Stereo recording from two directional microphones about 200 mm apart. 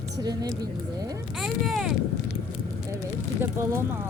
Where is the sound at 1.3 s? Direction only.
Centre (ahead or behind).